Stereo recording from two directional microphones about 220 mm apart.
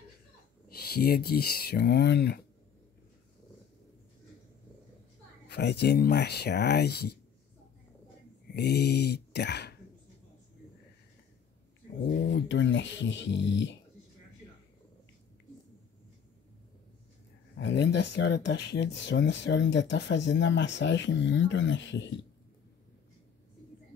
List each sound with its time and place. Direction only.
0.7 s speech: 45° left (ahead or behind)
5.5 s speech: 50° left (ahead or behind)
8.5 s speech: 50° left (ahead or behind)
12.3 s speech: 55° left (ahead or behind)
17.6 s speech: 55° left (ahead or behind)